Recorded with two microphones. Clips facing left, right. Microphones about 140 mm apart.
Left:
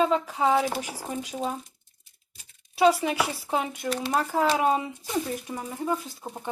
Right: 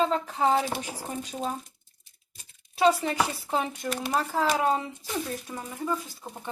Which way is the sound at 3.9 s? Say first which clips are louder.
Left 2 dB; centre (ahead or behind).